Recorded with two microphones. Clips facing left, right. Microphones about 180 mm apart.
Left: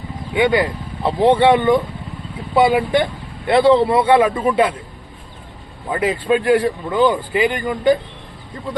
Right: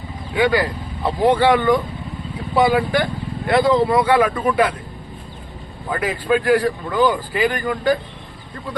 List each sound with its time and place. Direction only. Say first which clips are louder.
0.3 s speech: left 2 dB; 25° left (ahead or behind)
5.9 s speech: left 2 dB; 25° left (ahead or behind)